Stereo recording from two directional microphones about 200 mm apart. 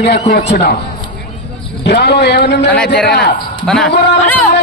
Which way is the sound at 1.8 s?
55° left (ahead or behind).